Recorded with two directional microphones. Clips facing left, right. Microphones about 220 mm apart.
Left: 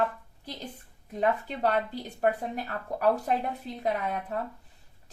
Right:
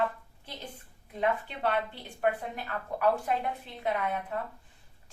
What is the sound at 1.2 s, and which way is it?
Speech, 40° left (ahead or behind).